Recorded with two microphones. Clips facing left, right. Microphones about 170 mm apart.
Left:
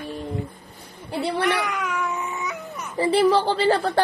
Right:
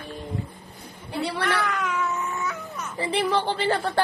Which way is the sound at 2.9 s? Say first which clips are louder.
Left 6 dB; 35° left (ahead or behind).